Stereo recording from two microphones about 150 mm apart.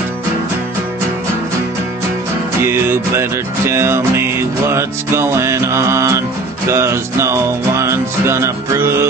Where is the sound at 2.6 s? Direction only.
15° right (ahead or behind).